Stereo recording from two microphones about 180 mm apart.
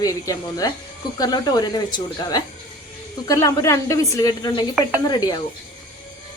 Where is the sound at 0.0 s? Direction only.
20° left (ahead or behind).